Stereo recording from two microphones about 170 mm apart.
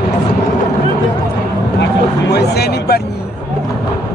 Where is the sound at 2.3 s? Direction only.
70° left (ahead or behind).